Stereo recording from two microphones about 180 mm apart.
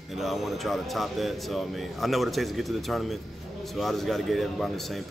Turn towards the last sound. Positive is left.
turn(degrees=0)  # may be behind; listen again after turning